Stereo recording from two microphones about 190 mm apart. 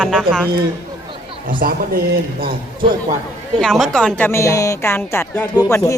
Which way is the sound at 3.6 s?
Centre (ahead or behind).